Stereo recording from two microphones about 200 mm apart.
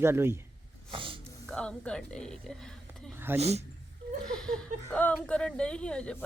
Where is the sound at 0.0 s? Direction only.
10° right (ahead or behind).